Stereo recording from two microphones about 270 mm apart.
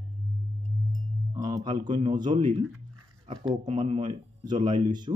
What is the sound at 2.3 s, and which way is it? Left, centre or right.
Speech, right.